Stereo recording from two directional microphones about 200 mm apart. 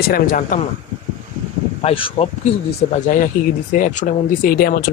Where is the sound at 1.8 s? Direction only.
30° left (ahead or behind).